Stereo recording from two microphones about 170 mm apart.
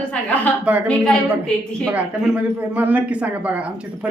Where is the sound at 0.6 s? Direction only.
10° right (ahead or behind).